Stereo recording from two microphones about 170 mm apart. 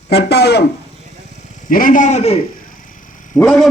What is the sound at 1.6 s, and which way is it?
Speech, 55° left (ahead or behind).